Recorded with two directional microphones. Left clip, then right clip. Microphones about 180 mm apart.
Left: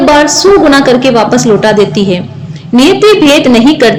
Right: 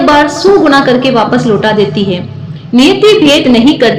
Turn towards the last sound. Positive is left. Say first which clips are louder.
# left 2 dB
turn(degrees=30)  # may be behind; listen again after turning